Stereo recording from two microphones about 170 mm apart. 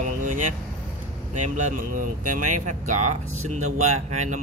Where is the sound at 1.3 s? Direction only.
45° right (ahead or behind).